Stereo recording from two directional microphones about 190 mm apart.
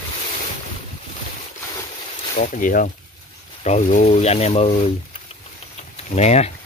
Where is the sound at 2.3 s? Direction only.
40° left (ahead or behind).